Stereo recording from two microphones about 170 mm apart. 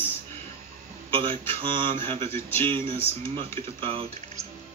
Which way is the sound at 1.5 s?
30° right (ahead or behind).